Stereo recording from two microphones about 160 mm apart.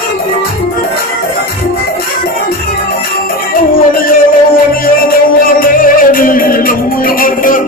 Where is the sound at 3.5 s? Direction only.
60° left (ahead or behind).